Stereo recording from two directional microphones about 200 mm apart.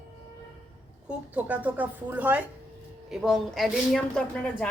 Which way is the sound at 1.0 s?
5° right (ahead or behind).